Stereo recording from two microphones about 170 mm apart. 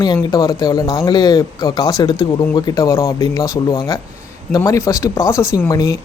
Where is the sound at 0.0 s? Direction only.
20° left (ahead or behind).